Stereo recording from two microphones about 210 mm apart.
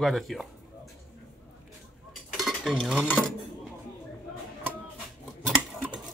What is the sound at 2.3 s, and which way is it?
Cutlery, centre (ahead or behind).